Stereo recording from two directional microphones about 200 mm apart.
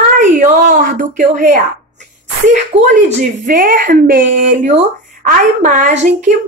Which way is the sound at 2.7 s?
30° right (ahead or behind).